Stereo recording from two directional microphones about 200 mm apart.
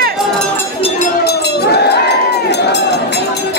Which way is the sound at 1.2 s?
55° left (ahead or behind).